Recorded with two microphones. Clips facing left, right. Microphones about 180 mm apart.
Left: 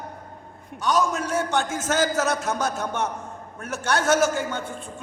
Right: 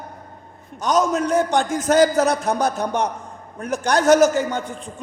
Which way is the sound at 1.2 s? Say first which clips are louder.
Right 6 dB; 15° right (ahead or behind).